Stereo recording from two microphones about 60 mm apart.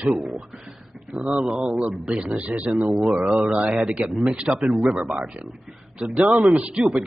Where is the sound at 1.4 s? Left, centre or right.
Centre.